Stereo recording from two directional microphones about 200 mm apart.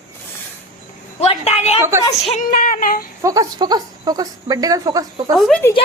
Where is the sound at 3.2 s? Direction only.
20° right (ahead or behind).